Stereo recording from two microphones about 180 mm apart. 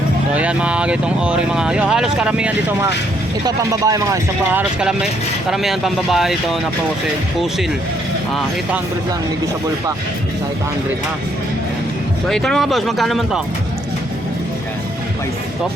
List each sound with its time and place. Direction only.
0.3 s speech: 5° right (ahead or behind)
4.8 s speech: 5° right (ahead or behind)
8.3 s speech: centre (ahead or behind)
12.3 s speech: centre (ahead or behind)